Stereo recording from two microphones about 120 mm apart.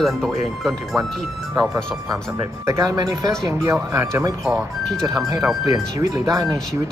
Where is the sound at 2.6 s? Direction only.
25° right (ahead or behind).